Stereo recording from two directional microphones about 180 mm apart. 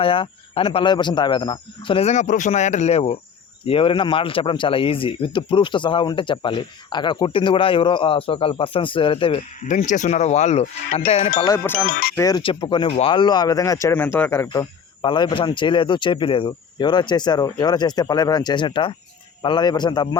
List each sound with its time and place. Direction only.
0.0 s speech: 30° left (ahead or behind)
11.4 s speech: 15° left (ahead or behind)
11.9 s speech: 55° left (ahead or behind)
12.1 s speech: 20° left (ahead or behind)